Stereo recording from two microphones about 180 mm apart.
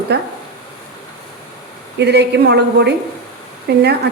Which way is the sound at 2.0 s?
70° right (ahead or behind).